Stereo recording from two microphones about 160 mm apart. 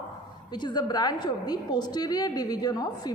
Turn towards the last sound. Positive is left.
turn(degrees=25)  # may be behind; listen again after turning